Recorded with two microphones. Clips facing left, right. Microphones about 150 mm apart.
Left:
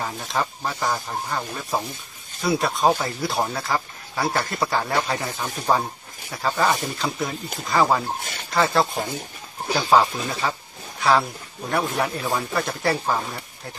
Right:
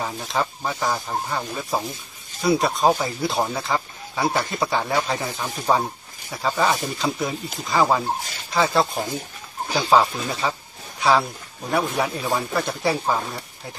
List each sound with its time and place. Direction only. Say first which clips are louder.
0.0 s speech: right 1 dB; centre (ahead or behind)
8.2 s speech: even; 60° left (ahead or behind)
8.5 s speech: even; centre (ahead or behind)